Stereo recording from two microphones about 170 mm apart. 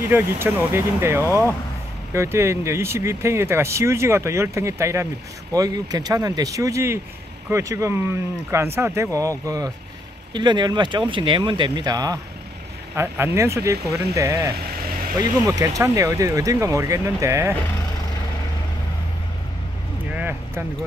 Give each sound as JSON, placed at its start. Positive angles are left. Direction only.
{"t": 0.1, "sound": "speech", "side_deg": -15}
{"t": 10.3, "sound": "speech", "side_deg": -25}
{"t": 14.5, "sound": "vehicle", "side_deg": -60}
{"t": 15.1, "sound": "speech", "side_deg": -20}
{"t": 20.2, "sound": "a sound", "side_deg": -10}